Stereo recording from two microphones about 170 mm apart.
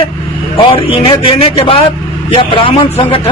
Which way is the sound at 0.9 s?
30° left (ahead or behind).